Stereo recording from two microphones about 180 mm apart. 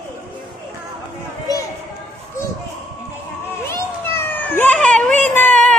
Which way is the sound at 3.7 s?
15° left (ahead or behind).